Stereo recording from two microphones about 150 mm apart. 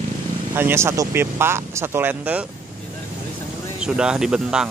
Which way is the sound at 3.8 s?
5° right (ahead or behind).